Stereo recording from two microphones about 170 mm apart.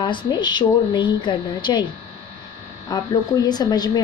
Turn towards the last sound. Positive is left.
turn(degrees=25)  # may be behind; listen again after turning